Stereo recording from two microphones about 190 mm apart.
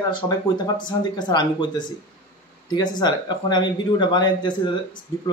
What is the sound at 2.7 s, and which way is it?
A man's voice, 20° left (ahead or behind).